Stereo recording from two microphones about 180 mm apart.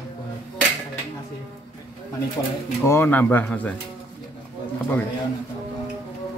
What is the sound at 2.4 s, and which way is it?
Speech, 20° left (ahead or behind).